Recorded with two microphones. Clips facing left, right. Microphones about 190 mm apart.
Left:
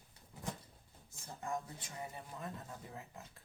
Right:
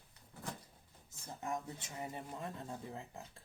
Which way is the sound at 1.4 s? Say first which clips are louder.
Even; 20° right (ahead or behind).